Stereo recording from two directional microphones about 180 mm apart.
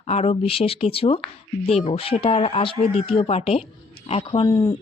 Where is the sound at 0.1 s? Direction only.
35° left (ahead or behind).